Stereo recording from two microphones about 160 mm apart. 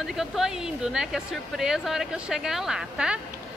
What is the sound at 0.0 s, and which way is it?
A woman's voice, centre (ahead or behind).